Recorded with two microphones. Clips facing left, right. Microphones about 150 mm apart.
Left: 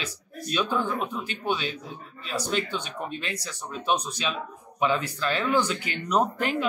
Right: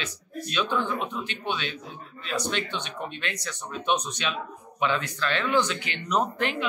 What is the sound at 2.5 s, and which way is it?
Speech, 40° left (ahead or behind).